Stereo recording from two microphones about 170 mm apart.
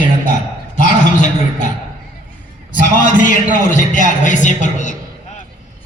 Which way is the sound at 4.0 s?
45° left (ahead or behind).